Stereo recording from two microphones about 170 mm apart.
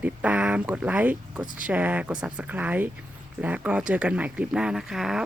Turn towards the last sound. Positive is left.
turn(degrees=-5)  # may be behind; listen again after turning